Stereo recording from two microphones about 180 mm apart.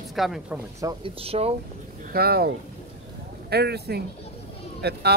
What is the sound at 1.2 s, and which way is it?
Speech, 35° right (ahead or behind).